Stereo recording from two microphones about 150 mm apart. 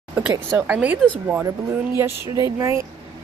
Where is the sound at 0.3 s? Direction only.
15° right (ahead or behind).